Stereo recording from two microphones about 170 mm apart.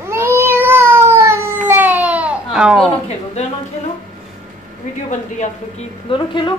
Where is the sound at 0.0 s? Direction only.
15° right (ahead or behind).